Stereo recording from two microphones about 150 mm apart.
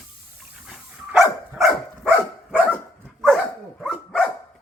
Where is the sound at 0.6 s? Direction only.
Centre (ahead or behind).